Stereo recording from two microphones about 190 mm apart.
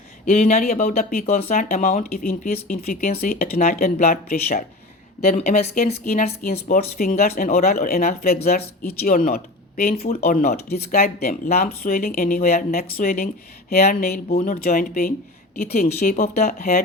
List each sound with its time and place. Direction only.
0.3 s speech: 35° left (ahead or behind)
5.2 s a woman's voice: 40° left (ahead or behind)
5.9 s speech: 55° left (ahead or behind)
14.3 s speech: 40° left (ahead or behind)